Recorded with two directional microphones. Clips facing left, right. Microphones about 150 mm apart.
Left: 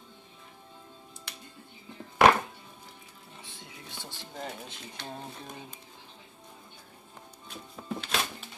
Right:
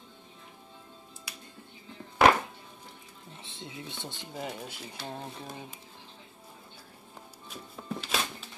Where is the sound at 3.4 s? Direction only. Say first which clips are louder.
Right 6 dB; 25° right (ahead or behind).